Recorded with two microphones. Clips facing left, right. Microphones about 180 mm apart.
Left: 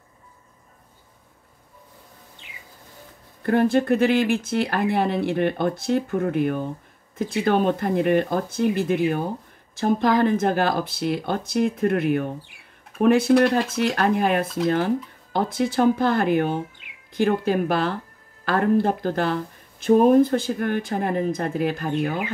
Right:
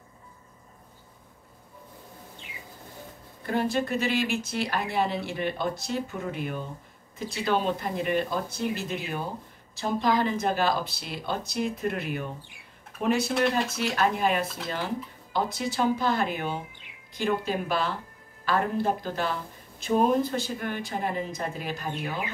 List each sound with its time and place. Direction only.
3.4 s speech: 55° left (ahead or behind)